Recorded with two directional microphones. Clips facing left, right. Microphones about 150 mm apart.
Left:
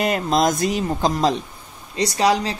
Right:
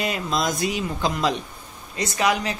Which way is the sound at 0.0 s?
50° left (ahead or behind).